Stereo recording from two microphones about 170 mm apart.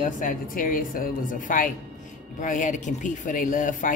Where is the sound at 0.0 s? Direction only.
55° left (ahead or behind).